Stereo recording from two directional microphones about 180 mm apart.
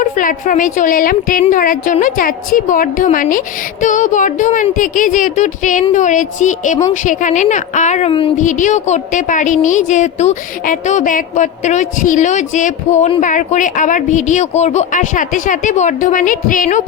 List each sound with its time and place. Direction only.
0.0 s a woman's voice: 50° left (ahead or behind); by 8.3 s 30° left (ahead or behind)
8.4 s a woman's voice: 45° left (ahead or behind)